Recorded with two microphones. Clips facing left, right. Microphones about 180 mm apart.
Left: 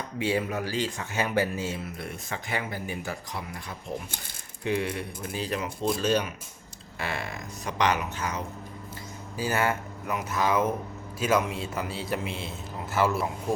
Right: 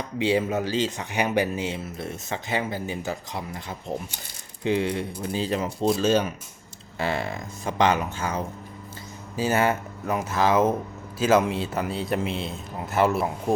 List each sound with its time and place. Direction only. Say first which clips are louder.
0.2 s speech: right 5 dB; 20° right (ahead or behind)